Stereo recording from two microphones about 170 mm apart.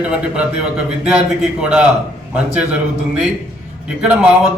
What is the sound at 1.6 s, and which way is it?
Speech, 5° right (ahead or behind).